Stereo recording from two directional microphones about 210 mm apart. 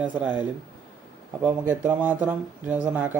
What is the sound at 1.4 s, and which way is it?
Speech, 10° right (ahead or behind).